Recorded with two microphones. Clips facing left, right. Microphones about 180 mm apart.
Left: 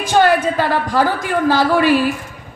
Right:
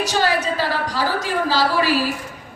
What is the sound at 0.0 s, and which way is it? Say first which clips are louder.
A woman's voice: left 6 dB; 55° left (ahead or behind).